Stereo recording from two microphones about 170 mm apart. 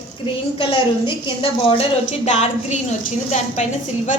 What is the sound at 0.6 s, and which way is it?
A woman's voice, 30° left (ahead or behind).